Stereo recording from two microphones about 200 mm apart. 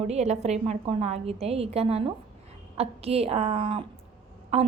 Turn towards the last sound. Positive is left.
turn(degrees=-30)  # may be behind; listen again after turning